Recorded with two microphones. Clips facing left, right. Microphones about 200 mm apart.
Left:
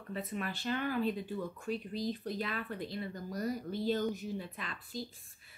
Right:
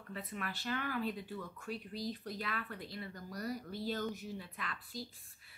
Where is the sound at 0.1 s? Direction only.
25° left (ahead or behind).